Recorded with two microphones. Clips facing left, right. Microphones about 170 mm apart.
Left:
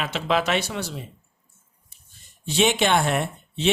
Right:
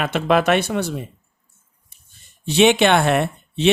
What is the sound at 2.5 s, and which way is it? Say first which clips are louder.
Speech: right 6 dB; 65° right (ahead or behind).